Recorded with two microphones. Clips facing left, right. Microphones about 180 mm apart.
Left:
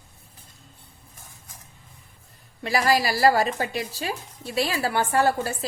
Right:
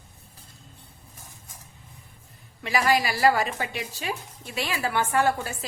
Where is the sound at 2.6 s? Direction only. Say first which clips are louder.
Left 1 dB; 35° left (ahead or behind).